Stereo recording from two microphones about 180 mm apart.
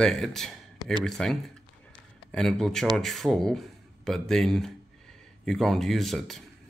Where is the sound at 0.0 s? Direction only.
Centre (ahead or behind).